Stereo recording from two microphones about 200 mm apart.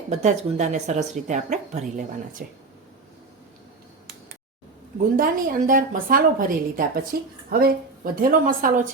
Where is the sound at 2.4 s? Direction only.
50° right (ahead or behind).